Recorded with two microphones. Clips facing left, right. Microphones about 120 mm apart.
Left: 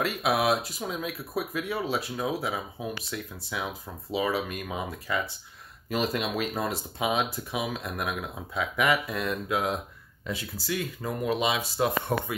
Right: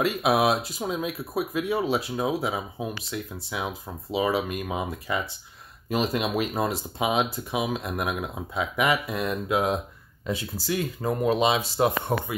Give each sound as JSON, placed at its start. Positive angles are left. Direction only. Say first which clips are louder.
{"t": 0.0, "sound": "speech", "louder": "right 4 dB", "side_deg": -20}